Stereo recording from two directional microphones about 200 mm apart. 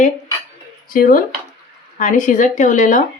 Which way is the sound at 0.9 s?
45° left (ahead or behind).